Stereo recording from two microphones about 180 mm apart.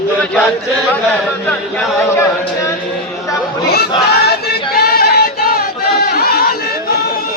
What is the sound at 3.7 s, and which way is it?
Speech, 60° left (ahead or behind).